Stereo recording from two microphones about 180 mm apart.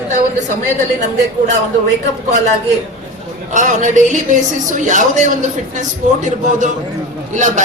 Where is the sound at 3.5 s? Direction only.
45° right (ahead or behind).